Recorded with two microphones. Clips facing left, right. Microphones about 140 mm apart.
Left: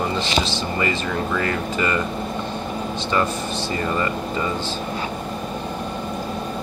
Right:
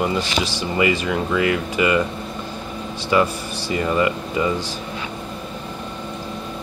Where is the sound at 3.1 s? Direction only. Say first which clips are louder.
Right 4 dB; 10° right (ahead or behind).